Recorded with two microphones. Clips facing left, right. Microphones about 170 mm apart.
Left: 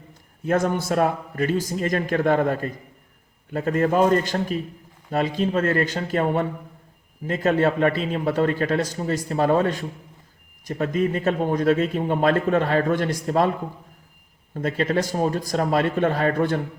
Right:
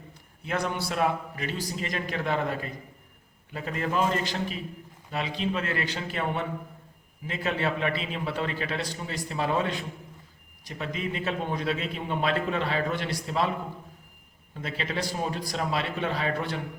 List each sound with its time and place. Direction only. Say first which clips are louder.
0.1 s a man's voice: left 10 dB; 45° left (ahead or behind)
14.5 s a man's voice: left 10 dB; 45° left (ahead or behind)